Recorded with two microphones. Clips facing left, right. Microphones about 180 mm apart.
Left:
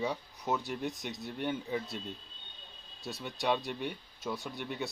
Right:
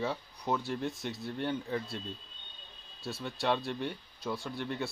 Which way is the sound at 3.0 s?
20° left (ahead or behind).